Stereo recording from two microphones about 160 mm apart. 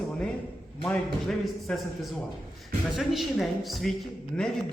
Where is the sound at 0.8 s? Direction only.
5° left (ahead or behind).